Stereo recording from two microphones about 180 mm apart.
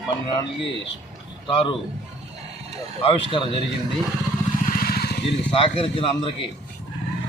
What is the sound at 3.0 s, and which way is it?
Speech, 30° left (ahead or behind).